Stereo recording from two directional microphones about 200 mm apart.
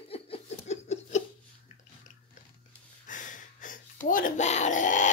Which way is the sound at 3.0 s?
40° left (ahead or behind).